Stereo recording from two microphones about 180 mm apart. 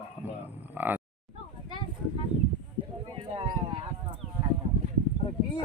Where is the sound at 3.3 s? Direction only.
30° right (ahead or behind).